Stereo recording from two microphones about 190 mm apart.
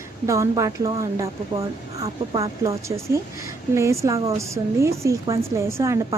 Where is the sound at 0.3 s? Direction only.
15° right (ahead or behind).